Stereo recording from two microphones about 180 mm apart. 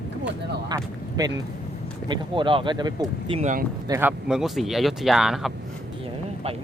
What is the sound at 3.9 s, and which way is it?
Speech, 10° right (ahead or behind).